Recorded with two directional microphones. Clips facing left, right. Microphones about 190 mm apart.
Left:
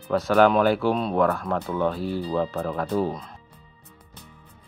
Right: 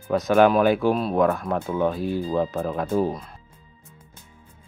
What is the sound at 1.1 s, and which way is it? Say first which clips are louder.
Speech: right 1 dB; 15° right (ahead or behind).